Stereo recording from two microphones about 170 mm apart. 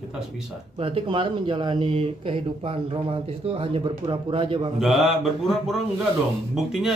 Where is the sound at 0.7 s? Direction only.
30° right (ahead or behind).